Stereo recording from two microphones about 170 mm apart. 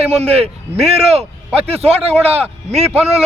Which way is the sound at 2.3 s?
35° right (ahead or behind).